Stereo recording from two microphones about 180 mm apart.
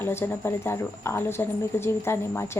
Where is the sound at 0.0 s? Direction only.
15° left (ahead or behind).